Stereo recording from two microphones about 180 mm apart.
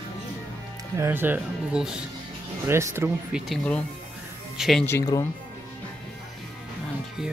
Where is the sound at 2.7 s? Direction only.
15° right (ahead or behind).